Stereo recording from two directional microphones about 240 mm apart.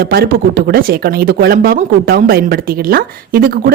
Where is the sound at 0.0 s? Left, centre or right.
Right.